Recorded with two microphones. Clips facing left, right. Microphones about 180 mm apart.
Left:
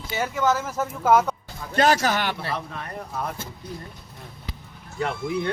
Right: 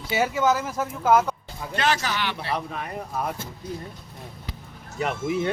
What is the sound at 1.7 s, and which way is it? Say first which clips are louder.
Speech: left 5 dB; 40° left (ahead or behind).